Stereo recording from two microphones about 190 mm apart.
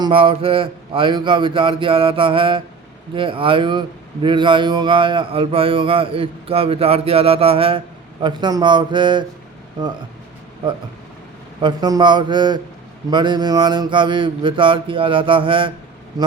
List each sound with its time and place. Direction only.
0.0 s speech: 25° right (ahead or behind)
11.6 s speech: 20° right (ahead or behind)